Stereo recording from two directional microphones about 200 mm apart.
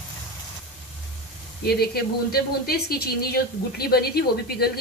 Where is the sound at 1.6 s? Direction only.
50° left (ahead or behind).